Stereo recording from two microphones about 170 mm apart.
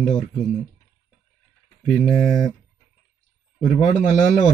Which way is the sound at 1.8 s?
Centre (ahead or behind).